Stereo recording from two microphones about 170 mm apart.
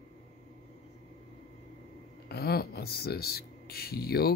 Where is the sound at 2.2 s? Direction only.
65° left (ahead or behind).